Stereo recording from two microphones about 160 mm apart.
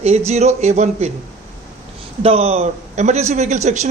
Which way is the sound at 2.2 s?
40° right (ahead or behind).